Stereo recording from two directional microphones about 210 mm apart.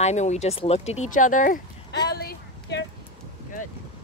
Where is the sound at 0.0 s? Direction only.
30° left (ahead or behind).